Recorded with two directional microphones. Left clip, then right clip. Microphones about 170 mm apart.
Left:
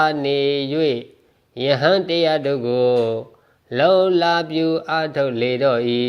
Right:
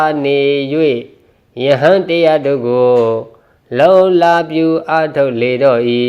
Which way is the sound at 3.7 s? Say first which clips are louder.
Right 7 dB; 20° left (ahead or behind).